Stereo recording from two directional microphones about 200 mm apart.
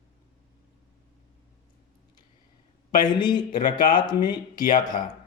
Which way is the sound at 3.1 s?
20° left (ahead or behind).